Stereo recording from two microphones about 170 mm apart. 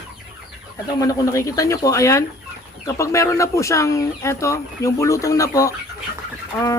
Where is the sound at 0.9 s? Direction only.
20° left (ahead or behind).